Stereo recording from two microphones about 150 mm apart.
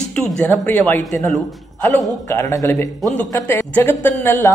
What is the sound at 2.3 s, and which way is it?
A man's voice, 20° left (ahead or behind).